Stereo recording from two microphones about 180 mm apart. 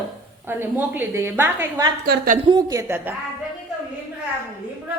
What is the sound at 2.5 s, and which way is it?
Speech, 20° right (ahead or behind).